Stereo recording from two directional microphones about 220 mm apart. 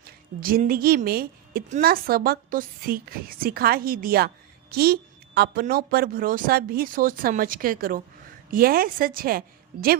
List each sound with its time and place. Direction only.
0.3 s a woman's voice: 40° right (ahead or behind)